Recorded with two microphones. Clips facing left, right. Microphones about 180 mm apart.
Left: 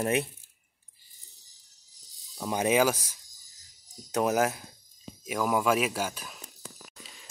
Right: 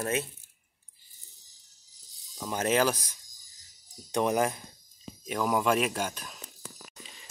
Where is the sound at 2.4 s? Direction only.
15° left (ahead or behind).